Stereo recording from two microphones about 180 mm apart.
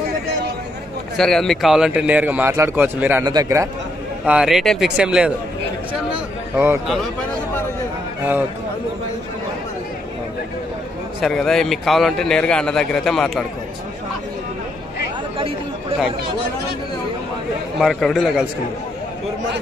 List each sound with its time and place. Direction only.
1.1 s a man's voice: centre (ahead or behind); by 3.6 s 20° right (ahead or behind)
4.3 s a man's voice: 5° right (ahead or behind)
11.1 s a man's voice: centre (ahead or behind)
17.7 s a man's voice: centre (ahead or behind)